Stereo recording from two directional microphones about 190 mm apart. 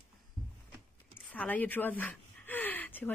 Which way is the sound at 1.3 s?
5° left (ahead or behind).